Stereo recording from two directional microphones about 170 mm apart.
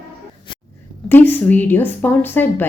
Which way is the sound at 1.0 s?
10° left (ahead or behind).